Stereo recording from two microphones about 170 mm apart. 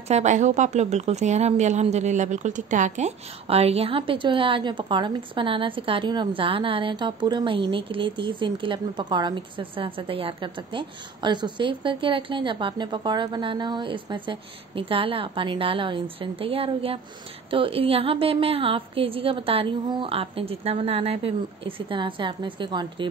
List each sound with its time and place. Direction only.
0.1 s speech: 45° right (ahead or behind); by 23.0 s 25° right (ahead or behind)